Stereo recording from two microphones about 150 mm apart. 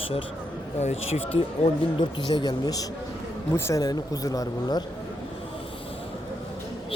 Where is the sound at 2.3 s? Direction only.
30° left (ahead or behind).